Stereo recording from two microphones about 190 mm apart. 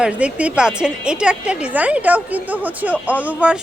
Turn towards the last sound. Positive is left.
turn(degrees=-5)  # may be behind; listen again after turning